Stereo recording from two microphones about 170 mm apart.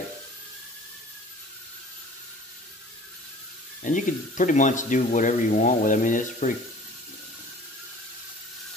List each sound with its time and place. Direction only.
3.8 s speech: 50° left (ahead or behind)